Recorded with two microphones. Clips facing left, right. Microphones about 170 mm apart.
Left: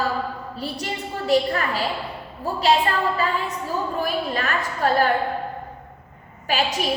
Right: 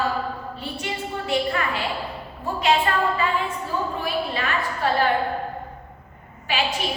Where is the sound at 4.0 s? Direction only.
45° left (ahead or behind).